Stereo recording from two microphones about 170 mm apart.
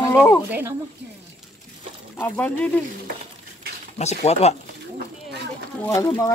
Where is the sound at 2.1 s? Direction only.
10° left (ahead or behind).